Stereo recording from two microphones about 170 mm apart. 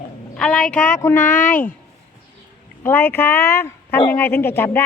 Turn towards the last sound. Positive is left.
turn(degrees=10)  # may be behind; listen again after turning